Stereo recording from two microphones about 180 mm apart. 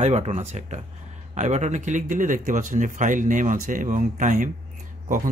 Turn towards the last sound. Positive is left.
turn(degrees=-45)  # may be behind; listen again after turning